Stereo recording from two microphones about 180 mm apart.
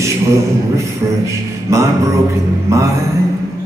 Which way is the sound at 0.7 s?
15° right (ahead or behind).